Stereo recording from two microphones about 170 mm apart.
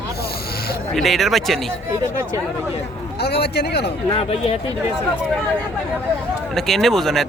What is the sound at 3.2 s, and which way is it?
Speech, 70° left (ahead or behind).